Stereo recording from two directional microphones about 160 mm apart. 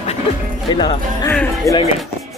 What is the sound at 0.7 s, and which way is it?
Jingle bell, 30° left (ahead or behind).